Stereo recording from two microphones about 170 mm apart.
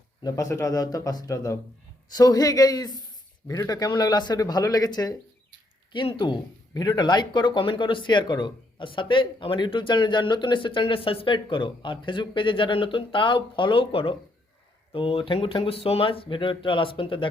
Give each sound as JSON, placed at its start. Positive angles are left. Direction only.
{"t": 0.2, "sound": "speech", "side_deg": 20}